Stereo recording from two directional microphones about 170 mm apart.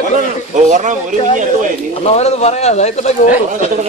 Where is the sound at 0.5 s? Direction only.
45° right (ahead or behind).